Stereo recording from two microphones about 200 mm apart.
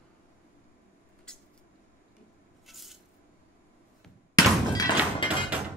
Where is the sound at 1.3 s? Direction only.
5° left (ahead or behind).